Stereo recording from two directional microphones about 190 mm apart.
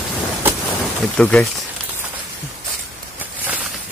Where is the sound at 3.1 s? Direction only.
5° right (ahead or behind).